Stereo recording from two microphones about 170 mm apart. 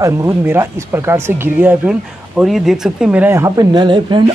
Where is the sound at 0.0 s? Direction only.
20° right (ahead or behind).